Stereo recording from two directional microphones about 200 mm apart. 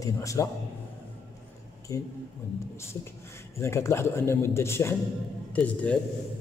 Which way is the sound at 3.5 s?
15° left (ahead or behind).